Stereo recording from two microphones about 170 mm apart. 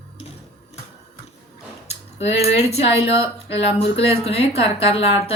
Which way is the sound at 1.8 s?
35° left (ahead or behind).